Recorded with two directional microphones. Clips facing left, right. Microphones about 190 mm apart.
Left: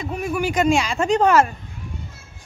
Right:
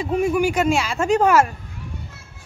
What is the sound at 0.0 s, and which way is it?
Speech, 30° right (ahead or behind).